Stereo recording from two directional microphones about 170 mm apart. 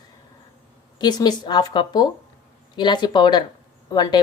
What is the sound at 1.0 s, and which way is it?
A woman's voice, 25° left (ahead or behind).